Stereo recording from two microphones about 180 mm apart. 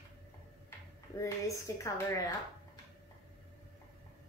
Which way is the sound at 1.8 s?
15° left (ahead or behind).